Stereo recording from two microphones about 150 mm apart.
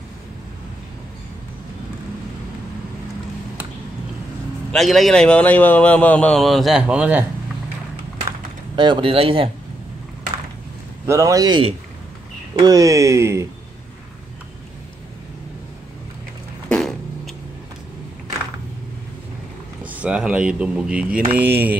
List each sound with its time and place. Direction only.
4.7 s a man's voice: centre (ahead or behind)
8.7 s speech: 30° right (ahead or behind)
11.1 s speech: 20° right (ahead or behind)
16.6 s a sound: 5° left (ahead or behind)
19.8 s speech: 10° right (ahead or behind)